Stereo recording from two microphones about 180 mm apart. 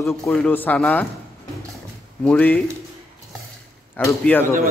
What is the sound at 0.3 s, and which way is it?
Speech, 10° left (ahead or behind).